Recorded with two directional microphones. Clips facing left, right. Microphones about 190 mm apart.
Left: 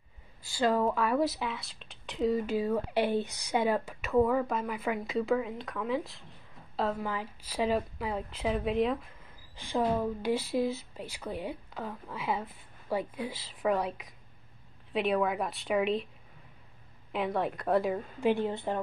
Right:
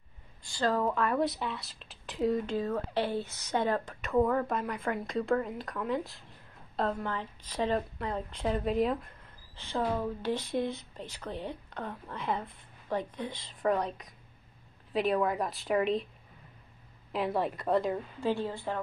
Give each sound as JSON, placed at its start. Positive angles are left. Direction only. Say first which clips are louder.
{"t": 0.4, "sound": "speech", "louder": "left 2 dB", "side_deg": 10}
{"t": 9.6, "sound": "speech", "louder": "left 3 dB", "side_deg": 10}
{"t": 17.1, "sound": "speech", "louder": "even", "side_deg": 0}
{"t": 18.2, "sound": "a woman's voice", "louder": "left 4 dB", "side_deg": 15}